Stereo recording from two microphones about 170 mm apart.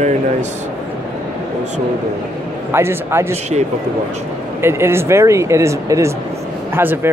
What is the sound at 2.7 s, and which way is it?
Speech, 15° right (ahead or behind).